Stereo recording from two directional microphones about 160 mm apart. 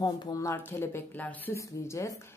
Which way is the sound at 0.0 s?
25° left (ahead or behind).